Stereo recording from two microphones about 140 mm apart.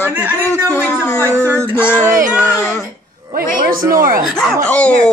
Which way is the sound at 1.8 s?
15° left (ahead or behind).